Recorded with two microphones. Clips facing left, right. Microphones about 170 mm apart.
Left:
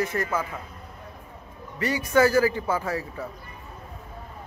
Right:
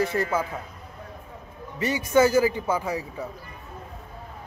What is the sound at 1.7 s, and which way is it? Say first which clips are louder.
A man's voice: right 1 dB; 20° right (ahead or behind).